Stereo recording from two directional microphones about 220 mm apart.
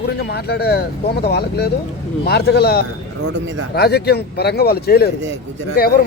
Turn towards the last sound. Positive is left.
turn(degrees=45)  # may be behind; listen again after turning